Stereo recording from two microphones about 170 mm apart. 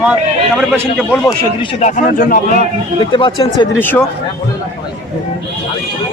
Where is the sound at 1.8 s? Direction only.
50° left (ahead or behind).